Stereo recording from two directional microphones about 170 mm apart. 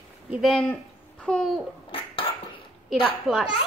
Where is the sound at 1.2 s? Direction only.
5° left (ahead or behind).